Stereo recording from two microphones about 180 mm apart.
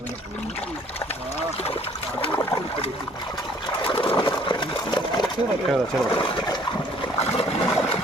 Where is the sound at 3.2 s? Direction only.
25° left (ahead or behind).